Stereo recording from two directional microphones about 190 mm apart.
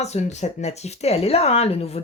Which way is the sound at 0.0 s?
35° left (ahead or behind).